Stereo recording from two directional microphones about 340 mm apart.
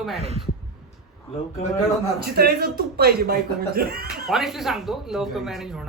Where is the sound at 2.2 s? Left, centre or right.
Right.